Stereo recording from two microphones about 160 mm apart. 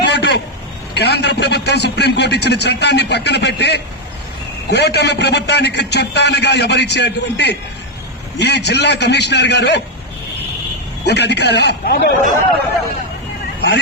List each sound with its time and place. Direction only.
0.0 s a sound: 90° left
0.9 s a man's voice: 90° left
11.0 s a man's voice: 90° left